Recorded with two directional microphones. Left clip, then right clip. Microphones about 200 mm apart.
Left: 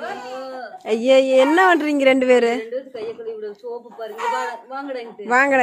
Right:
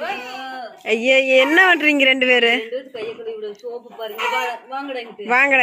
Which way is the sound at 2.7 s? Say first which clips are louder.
Even; 20° right (ahead or behind).